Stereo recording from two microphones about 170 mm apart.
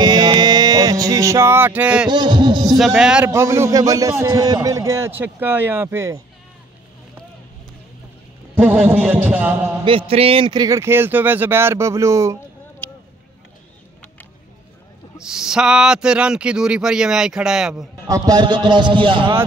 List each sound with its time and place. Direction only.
0.0 s a sound: 25° right (ahead or behind); by 2.0 s 10° right (ahead or behind)
2.0 s a man's voice: 25° right (ahead or behind)
2.8 s speech: centre (ahead or behind)
3.3 s a man's voice: 15° right (ahead or behind)
8.5 s speech: 10° right (ahead or behind)
9.8 s speech: 30° right (ahead or behind)
15.1 s speech: 5° right (ahead or behind)
18.0 s a man's voice: 20° right (ahead or behind)